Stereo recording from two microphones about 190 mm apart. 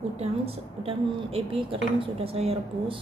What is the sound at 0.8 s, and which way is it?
A woman's voice, 30° right (ahead or behind).